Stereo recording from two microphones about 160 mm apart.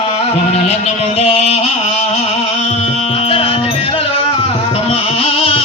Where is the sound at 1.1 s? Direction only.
40° left (ahead or behind).